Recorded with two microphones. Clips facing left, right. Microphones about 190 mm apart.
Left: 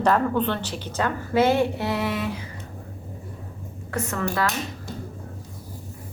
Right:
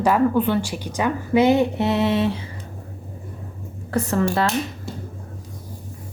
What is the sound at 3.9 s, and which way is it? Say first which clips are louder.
Speech: right 6 dB; 35° right (ahead or behind).